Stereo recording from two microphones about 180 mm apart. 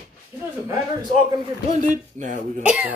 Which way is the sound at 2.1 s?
45° right (ahead or behind).